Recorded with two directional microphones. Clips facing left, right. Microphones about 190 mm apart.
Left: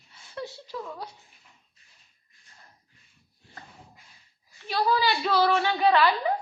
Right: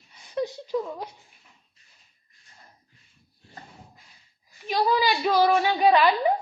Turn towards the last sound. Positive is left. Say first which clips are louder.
# right 2 dB
turn(degrees=-15)  # may be behind; listen again after turning